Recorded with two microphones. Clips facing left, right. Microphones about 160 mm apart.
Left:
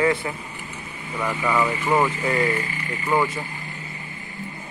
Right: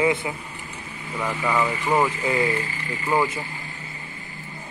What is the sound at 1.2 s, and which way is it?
Speech, 5° right (ahead or behind).